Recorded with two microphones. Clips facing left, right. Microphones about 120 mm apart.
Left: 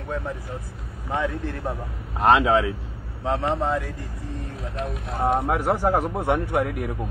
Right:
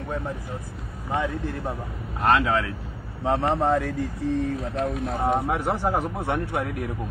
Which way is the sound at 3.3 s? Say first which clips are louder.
Right 1 dB; 25° right (ahead or behind).